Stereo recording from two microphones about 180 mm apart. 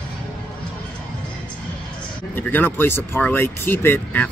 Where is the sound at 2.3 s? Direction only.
10° left (ahead or behind).